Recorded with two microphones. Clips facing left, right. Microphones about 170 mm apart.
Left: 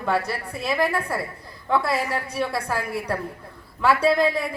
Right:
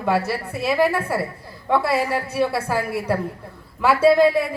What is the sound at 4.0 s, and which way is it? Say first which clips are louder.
Speech: right 9 dB; 5° right (ahead or behind).